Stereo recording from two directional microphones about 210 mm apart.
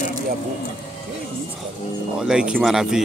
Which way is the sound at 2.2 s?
5° right (ahead or behind).